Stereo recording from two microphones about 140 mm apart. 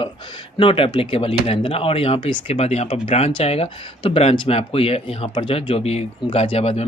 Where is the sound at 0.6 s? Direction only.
40° left (ahead or behind).